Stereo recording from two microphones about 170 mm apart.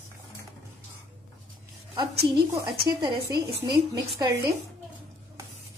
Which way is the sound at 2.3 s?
30° right (ahead or behind).